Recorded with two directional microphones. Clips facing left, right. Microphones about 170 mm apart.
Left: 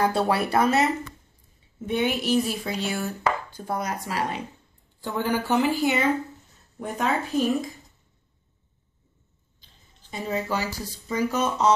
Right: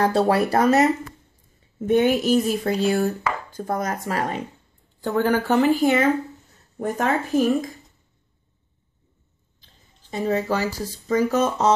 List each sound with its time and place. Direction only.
0.1 s speech: 40° right (ahead or behind)
10.1 s speech: 40° right (ahead or behind)